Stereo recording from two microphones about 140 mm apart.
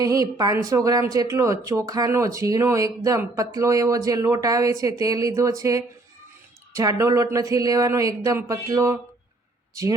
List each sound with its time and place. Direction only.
0.0 s speech: 25° right (ahead or behind)